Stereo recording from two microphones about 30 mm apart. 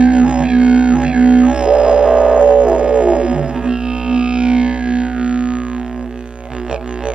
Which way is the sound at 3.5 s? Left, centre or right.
Right.